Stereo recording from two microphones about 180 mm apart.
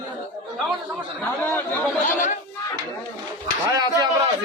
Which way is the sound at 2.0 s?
45° left (ahead or behind).